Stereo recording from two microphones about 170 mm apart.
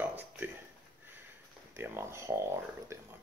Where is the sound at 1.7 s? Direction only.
15° right (ahead or behind).